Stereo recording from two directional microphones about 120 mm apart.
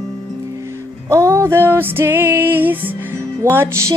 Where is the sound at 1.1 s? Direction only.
25° right (ahead or behind).